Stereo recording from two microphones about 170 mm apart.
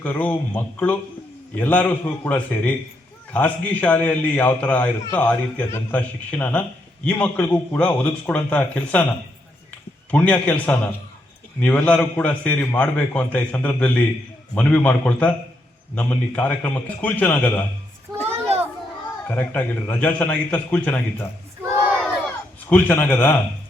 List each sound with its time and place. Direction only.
0.0 s a man's voice: 10° left (ahead or behind)
10.1 s a man's voice: 10° left (ahead or behind)
18.3 s children playing: 35° right (ahead or behind)
19.3 s a man's voice: 10° left (ahead or behind)
21.6 s battle cry: 15° right (ahead or behind)
22.7 s a man's voice: 10° left (ahead or behind)